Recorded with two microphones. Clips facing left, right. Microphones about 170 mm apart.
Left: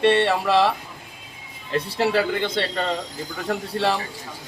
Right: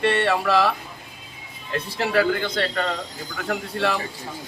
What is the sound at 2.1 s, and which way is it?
Speech, 25° left (ahead or behind).